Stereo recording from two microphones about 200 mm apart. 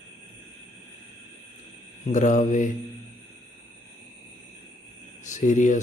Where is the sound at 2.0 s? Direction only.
35° left (ahead or behind).